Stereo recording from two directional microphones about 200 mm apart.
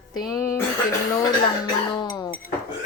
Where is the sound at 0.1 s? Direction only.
20° left (ahead or behind).